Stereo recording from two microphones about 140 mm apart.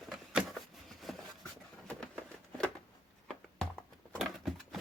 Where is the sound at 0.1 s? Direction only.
Centre (ahead or behind).